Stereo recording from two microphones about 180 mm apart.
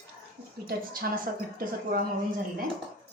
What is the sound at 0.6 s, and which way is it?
A woman's voice, 55° right (ahead or behind).